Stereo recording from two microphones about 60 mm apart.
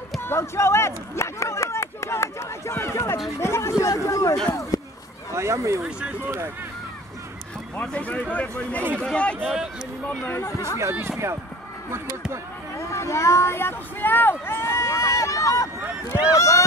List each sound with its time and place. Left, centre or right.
0.2 s speech: left
5.3 s speech: right
5.9 s speech: centre
7.8 s speech: left
10.8 s speech: right
12.7 s speech: left